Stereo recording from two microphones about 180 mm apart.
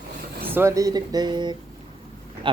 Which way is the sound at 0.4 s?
15° right (ahead or behind).